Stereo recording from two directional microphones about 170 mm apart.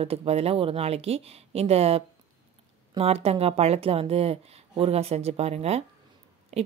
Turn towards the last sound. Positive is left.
turn(degrees=-40)  # may be behind; listen again after turning